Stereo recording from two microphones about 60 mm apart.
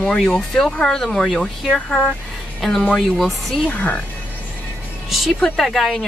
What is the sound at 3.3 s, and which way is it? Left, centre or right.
Speech, centre.